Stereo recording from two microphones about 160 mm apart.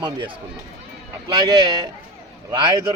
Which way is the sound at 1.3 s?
25° right (ahead or behind).